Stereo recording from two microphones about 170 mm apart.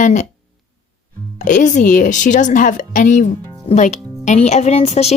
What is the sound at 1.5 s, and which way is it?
Speech, 45° left (ahead or behind).